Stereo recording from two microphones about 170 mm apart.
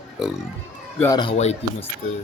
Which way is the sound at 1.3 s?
40° left (ahead or behind).